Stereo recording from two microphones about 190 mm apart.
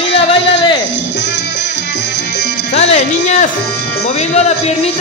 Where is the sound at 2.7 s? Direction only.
35° left (ahead or behind).